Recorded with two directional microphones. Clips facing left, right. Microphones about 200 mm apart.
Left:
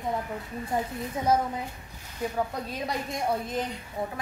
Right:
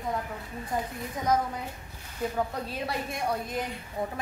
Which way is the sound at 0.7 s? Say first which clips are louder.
Left 2 dB; 30° left (ahead or behind).